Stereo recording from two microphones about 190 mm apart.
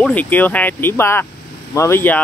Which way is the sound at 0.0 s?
10° left (ahead or behind).